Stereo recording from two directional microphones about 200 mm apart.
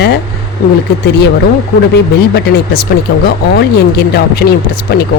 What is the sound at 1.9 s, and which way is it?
Speech, 55° left (ahead or behind).